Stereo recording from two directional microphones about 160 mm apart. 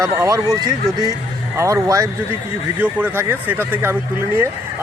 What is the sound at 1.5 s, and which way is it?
Speech, 20° right (ahead or behind).